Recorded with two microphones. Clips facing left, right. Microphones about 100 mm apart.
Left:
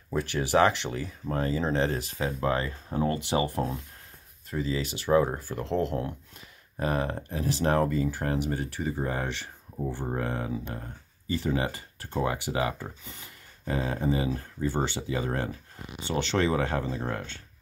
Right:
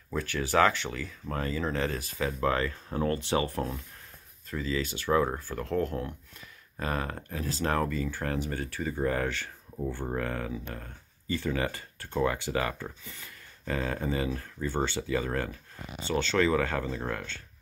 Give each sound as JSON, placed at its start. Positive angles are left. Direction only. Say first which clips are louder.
{"t": 0.1, "sound": "speech", "louder": "left 3 dB", "side_deg": 30}
{"t": 9.8, "sound": "speech", "louder": "left 1 dB", "side_deg": 10}
{"t": 10.1, "sound": "speech", "louder": "left 2 dB", "side_deg": 20}